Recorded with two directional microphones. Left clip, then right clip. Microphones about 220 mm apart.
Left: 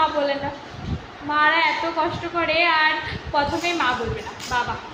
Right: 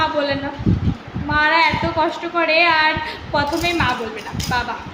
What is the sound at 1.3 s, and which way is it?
A woman's voice, 15° right (ahead or behind).